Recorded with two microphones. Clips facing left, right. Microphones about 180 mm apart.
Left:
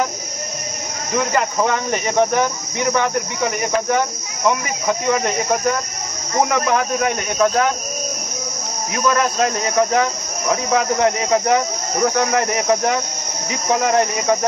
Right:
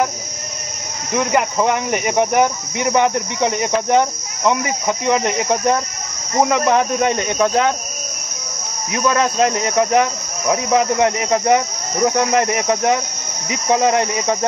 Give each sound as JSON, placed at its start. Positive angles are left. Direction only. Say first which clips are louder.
{"t": 1.3, "sound": "cricket", "louder": "right 3 dB", "side_deg": -15}
{"t": 9.1, "sound": "cricket", "louder": "right 3 dB", "side_deg": -20}